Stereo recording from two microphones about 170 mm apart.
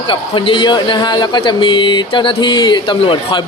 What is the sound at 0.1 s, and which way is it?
Speech, 30° left (ahead or behind).